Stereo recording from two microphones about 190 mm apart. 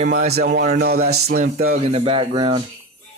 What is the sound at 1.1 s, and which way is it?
Speech, 60° right (ahead or behind).